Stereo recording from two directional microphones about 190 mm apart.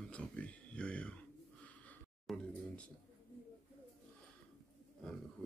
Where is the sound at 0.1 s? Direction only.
5° left (ahead or behind).